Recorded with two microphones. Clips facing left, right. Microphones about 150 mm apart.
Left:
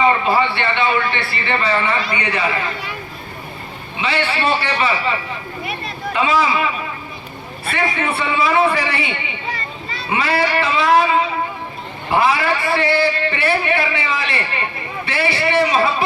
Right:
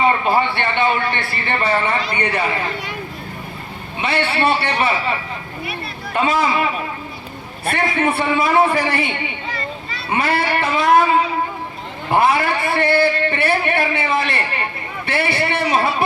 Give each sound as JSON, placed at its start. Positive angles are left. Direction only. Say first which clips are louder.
{"t": 0.1, "sound": "a man's voice", "louder": "even", "side_deg": -50}
{"t": 4.0, "sound": "a man's voice", "louder": "right 1 dB", "side_deg": -55}
{"t": 6.1, "sound": "a man's voice", "louder": "even", "side_deg": -50}